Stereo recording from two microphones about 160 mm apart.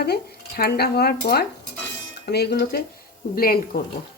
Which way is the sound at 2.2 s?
90° left.